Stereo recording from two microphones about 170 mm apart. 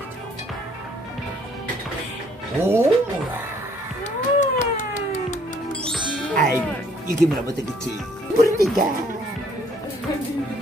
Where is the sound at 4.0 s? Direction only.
45° left (ahead or behind).